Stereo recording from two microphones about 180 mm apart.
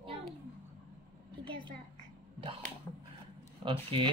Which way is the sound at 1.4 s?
25° right (ahead or behind).